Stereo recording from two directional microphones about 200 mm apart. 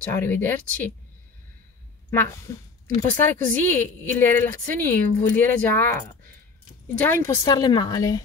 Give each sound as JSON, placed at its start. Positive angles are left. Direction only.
{"t": 0.1, "sound": "speech", "side_deg": 10}
{"t": 3.0, "sound": "speech", "side_deg": 10}
{"t": 7.4, "sound": "speech", "side_deg": 20}